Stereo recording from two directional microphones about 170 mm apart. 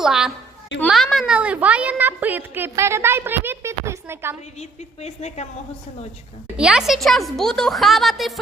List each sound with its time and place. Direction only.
0.0 s a child's voice: 5° right (ahead or behind)
5.0 s a woman's voice: 40° left (ahead or behind)
6.6 s speech: 5° right (ahead or behind)